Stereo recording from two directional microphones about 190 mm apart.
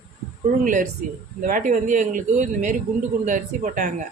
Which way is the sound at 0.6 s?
40° right (ahead or behind).